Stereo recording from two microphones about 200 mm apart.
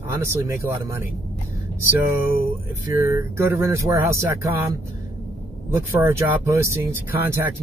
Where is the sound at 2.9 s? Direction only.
15° right (ahead or behind).